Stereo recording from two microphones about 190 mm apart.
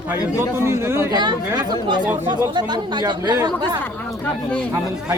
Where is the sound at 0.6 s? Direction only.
15° right (ahead or behind).